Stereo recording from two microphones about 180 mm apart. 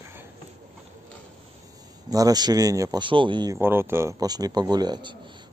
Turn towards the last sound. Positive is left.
turn(degrees=-25)  # may be behind; listen again after turning